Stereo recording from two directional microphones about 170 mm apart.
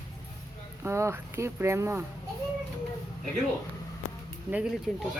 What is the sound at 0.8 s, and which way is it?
A woman's voice, 15° right (ahead or behind).